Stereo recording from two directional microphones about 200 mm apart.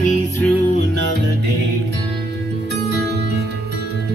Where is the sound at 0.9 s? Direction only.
60° right (ahead or behind).